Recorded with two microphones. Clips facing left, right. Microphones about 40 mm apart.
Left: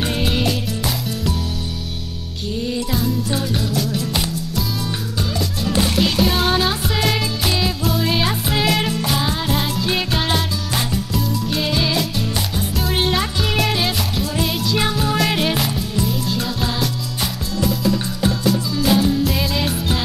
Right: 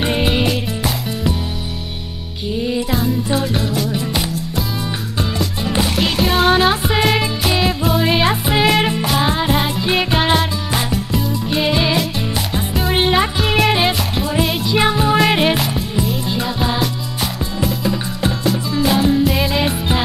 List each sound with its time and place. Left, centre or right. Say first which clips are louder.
0.0 s music: right 3 dB; right
2.5 s music: right 4 dB; centre
6.1 s music: right 4 dB; centre
6.7 s music: right 4 dB; right